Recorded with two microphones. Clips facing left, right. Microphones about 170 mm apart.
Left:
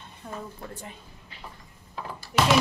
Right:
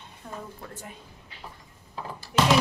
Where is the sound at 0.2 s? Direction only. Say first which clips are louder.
Left 2 dB; 5° right (ahead or behind).